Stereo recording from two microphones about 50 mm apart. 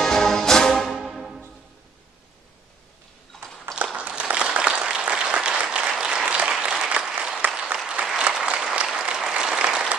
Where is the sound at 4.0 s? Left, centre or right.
Right.